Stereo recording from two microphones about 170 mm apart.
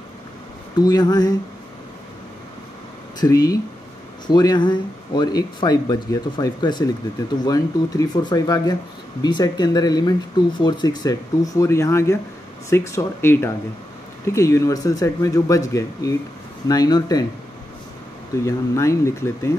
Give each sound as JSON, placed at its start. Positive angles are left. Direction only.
{"t": 0.7, "sound": "speech", "side_deg": 25}
{"t": 3.2, "sound": "speech", "side_deg": 20}
{"t": 18.4, "sound": "speech", "side_deg": 15}